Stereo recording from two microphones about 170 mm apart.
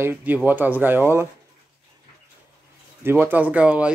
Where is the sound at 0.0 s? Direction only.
10° right (ahead or behind).